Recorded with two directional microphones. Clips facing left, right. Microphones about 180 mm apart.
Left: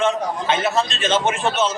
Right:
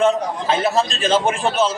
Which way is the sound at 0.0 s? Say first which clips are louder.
Right 3 dB; 35° right (ahead or behind).